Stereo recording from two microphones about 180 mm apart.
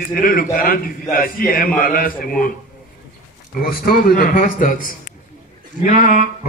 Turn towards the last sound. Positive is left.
turn(degrees=45)  # may be behind; listen again after turning